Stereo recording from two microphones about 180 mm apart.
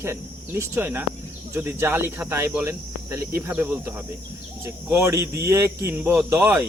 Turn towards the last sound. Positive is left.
turn(degrees=-10)  # may be behind; listen again after turning